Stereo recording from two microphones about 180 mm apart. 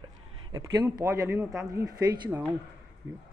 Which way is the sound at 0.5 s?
20° right (ahead or behind).